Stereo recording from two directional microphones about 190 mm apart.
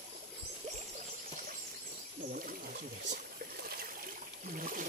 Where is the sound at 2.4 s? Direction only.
50° right (ahead or behind).